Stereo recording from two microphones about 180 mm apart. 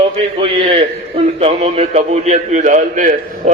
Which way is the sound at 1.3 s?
35° right (ahead or behind).